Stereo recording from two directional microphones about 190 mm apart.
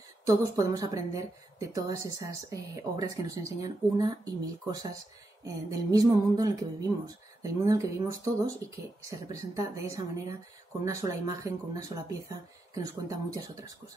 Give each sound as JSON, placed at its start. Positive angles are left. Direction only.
{"t": 0.2, "sound": "a woman's voice", "side_deg": -15}
{"t": 5.4, "sound": "a sound", "side_deg": -20}
{"t": 7.4, "sound": "a woman's voice", "side_deg": -15}